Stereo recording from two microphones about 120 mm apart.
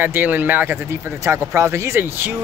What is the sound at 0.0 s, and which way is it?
Speech, 15° right (ahead or behind).